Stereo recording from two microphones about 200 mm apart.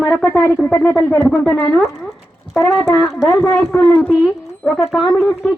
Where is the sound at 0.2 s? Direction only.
10° left (ahead or behind).